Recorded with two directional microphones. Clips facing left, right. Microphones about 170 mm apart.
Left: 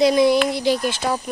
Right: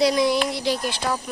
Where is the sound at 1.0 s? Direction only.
15° left (ahead or behind).